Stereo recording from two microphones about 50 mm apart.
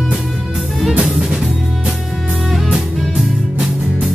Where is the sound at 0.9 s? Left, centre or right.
Centre.